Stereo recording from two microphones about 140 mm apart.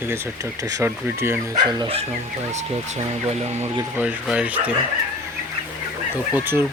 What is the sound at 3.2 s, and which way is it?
Speech, 50° right (ahead or behind).